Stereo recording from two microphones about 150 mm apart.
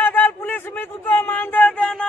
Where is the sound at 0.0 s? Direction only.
10° left (ahead or behind).